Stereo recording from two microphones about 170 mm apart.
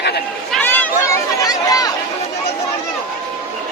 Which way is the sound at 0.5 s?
10° left (ahead or behind).